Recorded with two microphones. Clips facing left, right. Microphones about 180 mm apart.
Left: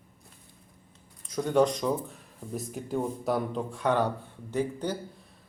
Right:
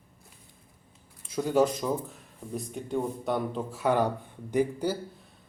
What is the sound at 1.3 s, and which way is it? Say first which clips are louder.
A man's voice: even; 5° right (ahead or behind).